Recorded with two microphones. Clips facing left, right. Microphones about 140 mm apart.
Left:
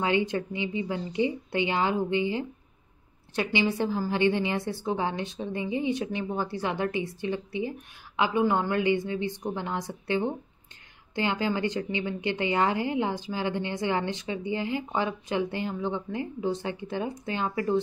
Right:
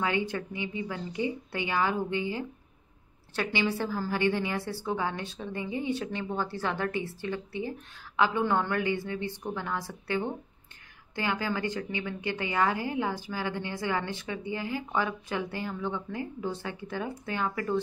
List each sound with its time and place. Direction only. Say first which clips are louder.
0.0 s a woman's voice: left 4 dB; 20° left (ahead or behind)